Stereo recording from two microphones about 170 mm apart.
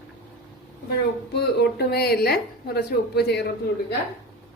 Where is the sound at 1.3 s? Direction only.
75° left (ahead or behind).